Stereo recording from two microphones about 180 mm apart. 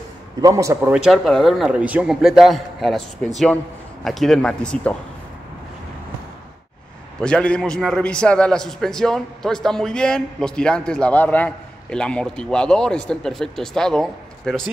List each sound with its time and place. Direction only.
0.4 s a man's voice: 15° right (ahead or behind)
0.9 s a man's voice: centre (ahead or behind)
7.2 s a man's voice: 5° left (ahead or behind)